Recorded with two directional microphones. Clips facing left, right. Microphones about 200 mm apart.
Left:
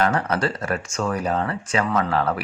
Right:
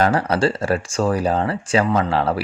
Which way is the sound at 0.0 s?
35° right (ahead or behind).